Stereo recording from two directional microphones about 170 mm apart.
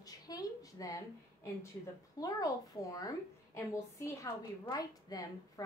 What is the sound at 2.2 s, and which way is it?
A woman's voice, 20° left (ahead or behind).